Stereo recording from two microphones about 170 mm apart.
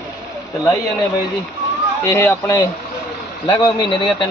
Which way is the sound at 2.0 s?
15° left (ahead or behind).